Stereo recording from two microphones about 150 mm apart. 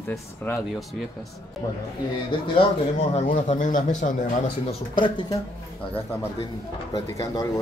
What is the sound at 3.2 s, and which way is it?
Speech, 55° left (ahead or behind).